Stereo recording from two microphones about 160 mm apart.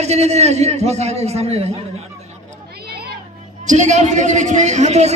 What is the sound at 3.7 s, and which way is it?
A man's voice, 50° right (ahead or behind).